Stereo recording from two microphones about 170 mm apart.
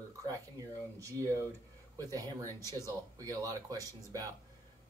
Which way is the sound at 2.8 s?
20° right (ahead or behind).